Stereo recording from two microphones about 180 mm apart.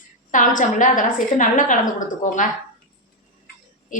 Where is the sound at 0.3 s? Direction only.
45° left (ahead or behind).